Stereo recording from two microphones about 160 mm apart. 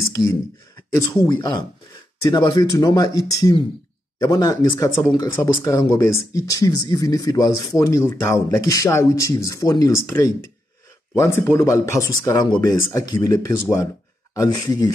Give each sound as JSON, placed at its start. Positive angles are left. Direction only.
{"t": 0.2, "sound": "speech", "side_deg": 25}